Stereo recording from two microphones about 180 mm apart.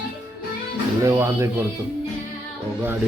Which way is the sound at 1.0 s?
15° right (ahead or behind).